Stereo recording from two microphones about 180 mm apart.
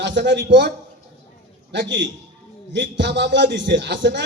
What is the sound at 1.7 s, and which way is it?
A man's voice, 80° right.